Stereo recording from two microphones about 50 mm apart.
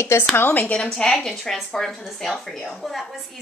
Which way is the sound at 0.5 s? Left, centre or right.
Left.